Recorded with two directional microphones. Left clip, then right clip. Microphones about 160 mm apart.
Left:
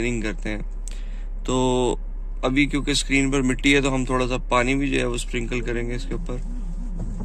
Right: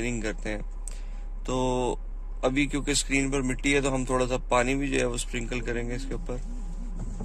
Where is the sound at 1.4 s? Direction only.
10° right (ahead or behind).